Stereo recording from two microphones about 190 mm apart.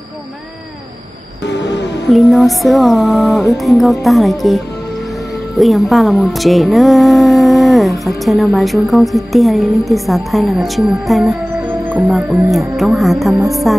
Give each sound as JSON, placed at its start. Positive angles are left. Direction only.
{"t": 1.4, "sound": "music", "side_deg": 65}
{"t": 2.0, "sound": "a woman's voice", "side_deg": 0}
{"t": 5.6, "sound": "a woman's voice", "side_deg": 0}